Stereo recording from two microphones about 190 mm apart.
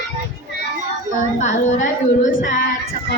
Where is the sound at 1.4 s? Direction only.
40° left (ahead or behind).